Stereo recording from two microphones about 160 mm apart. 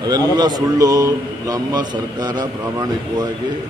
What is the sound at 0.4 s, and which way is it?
Speech, 25° right (ahead or behind).